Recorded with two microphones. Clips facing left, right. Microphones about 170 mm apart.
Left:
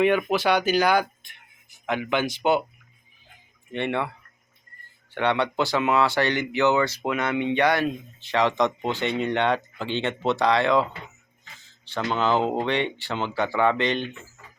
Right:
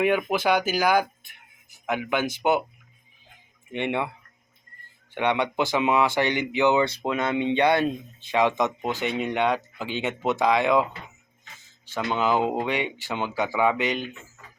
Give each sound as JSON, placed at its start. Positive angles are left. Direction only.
{"t": 0.0, "sound": "speech", "side_deg": -10}
{"t": 3.7, "sound": "speech", "side_deg": -15}
{"t": 5.1, "sound": "speech", "side_deg": -15}
{"t": 8.4, "sound": "speech", "side_deg": -10}
{"t": 11.9, "sound": "speech", "side_deg": -10}